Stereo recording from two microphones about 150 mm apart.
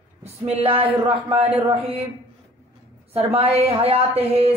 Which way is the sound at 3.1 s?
40° right (ahead or behind).